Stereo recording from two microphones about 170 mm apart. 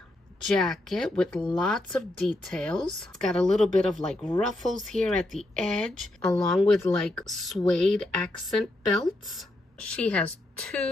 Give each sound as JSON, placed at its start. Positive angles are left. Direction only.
{"t": 0.5, "sound": "speech", "side_deg": 0}